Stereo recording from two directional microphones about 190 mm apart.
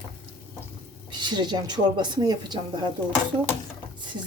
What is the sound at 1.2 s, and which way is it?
Speech, 20° right (ahead or behind).